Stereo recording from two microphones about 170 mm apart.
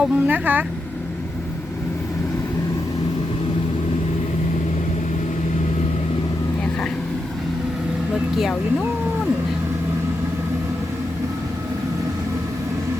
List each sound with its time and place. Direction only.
0.0 s speech: 10° right (ahead or behind)